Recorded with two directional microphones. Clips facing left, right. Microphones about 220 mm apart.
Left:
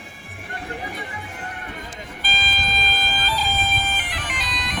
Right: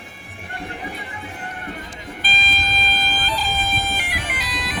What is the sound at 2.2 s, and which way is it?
Car alarm, 25° right (ahead or behind).